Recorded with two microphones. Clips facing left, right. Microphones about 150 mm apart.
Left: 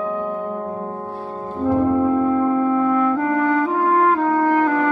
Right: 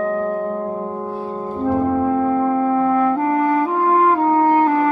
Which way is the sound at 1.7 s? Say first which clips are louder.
Left 1 dB; 25° right (ahead or behind).